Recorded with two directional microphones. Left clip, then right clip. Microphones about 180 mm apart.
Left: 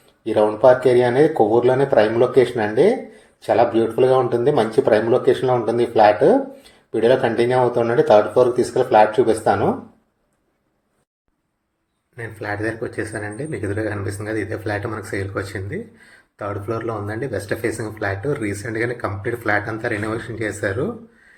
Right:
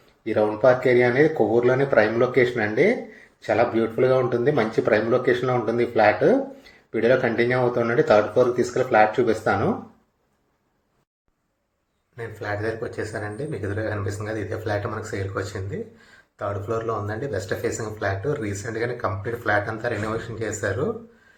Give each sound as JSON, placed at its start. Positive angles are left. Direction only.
{"t": 0.3, "sound": "speech", "side_deg": 20}
{"t": 12.1, "sound": "speech", "side_deg": 15}